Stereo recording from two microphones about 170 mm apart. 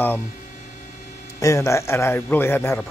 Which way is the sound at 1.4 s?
15° left (ahead or behind).